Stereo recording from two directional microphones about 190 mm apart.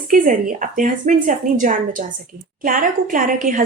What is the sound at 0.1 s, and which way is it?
Speech, 45° right (ahead or behind).